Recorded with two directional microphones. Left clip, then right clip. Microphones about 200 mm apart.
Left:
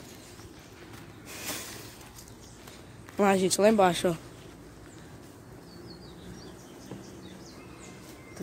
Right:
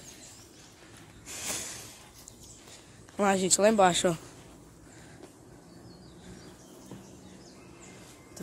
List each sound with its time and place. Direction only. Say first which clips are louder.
1.3 s a sound: right 1 dB; 5° right (ahead or behind)
3.2 s speech: left 1 dB; 5° right (ahead or behind)
3.9 s speech: right 1 dB; 30° right (ahead or behind)